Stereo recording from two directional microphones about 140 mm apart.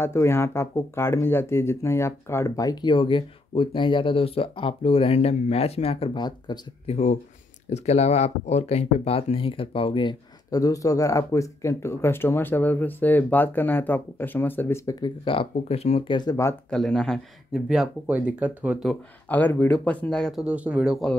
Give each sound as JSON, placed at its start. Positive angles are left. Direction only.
{"t": 0.0, "sound": "speech", "side_deg": 20}
{"t": 6.9, "sound": "speech", "side_deg": 55}
{"t": 15.0, "sound": "speech", "side_deg": 35}
{"t": 15.5, "sound": "speech", "side_deg": 50}
{"t": 16.7, "sound": "speech", "side_deg": 5}
{"t": 19.2, "sound": "speech", "side_deg": 10}
{"t": 20.4, "sound": "speech", "side_deg": -10}